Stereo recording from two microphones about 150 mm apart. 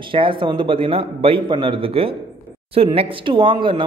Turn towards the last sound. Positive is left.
turn(degrees=-35)  # may be behind; listen again after turning